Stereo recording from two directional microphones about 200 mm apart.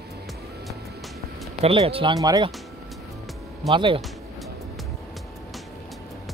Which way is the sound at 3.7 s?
25° right (ahead or behind).